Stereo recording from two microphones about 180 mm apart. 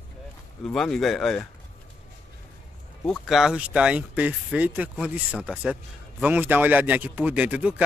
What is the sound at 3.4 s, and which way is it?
Speech, 5° right (ahead or behind).